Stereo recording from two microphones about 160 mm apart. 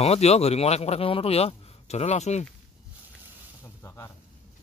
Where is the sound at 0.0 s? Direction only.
40° left (ahead or behind).